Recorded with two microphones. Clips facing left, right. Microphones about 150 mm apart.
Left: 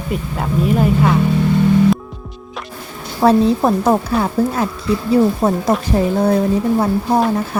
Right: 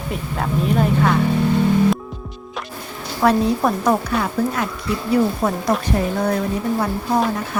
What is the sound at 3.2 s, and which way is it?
A woman's voice, 30° left (ahead or behind).